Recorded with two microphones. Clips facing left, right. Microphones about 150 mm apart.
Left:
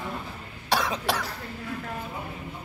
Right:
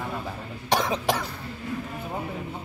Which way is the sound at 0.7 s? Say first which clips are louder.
Right 2 dB; 15° right (ahead or behind).